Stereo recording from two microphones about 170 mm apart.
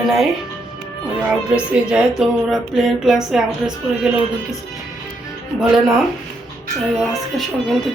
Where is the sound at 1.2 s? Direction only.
5° right (ahead or behind).